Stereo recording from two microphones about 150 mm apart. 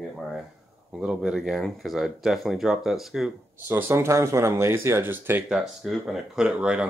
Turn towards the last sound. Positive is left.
turn(degrees=-5)  # may be behind; listen again after turning